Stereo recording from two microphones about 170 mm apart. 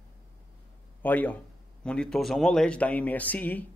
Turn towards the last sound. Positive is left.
turn(degrees=10)  # may be behind; listen again after turning